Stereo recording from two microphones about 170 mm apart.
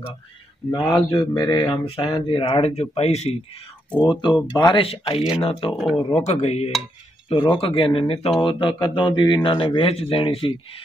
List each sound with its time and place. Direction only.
0.7 s speech: 25° left (ahead or behind)
4.1 s speech: 25° left (ahead or behind)
5.8 s speech: centre (ahead or behind)
6.1 s speech: 40° left (ahead or behind)